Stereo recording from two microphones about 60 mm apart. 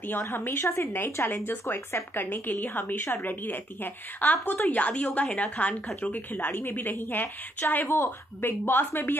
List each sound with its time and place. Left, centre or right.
0.2 s a woman's voice: left
7.9 s a woman's voice: left